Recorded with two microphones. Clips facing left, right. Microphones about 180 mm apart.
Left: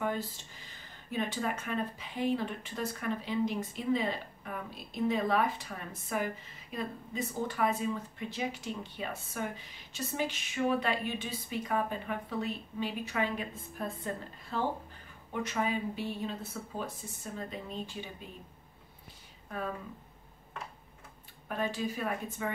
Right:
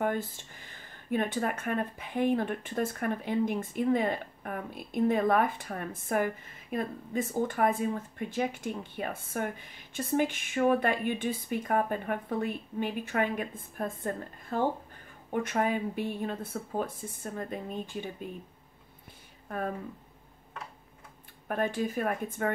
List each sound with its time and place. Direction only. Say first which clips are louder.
0.0 s speech: right 4 dB; 55° right (ahead or behind)
21.5 s speech: right 4 dB; 50° right (ahead or behind)